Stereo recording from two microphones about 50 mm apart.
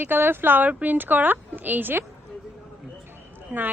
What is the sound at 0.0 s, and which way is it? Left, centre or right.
A woman's voice, right.